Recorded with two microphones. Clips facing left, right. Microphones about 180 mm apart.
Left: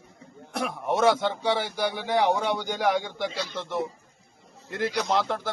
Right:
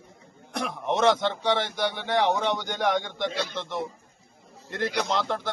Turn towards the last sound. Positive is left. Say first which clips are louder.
# left 1 dB
turn(degrees=0)  # may be behind; listen again after turning